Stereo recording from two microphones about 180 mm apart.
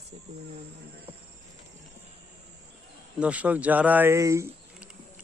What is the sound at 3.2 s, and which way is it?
A man's voice, 10° right (ahead or behind).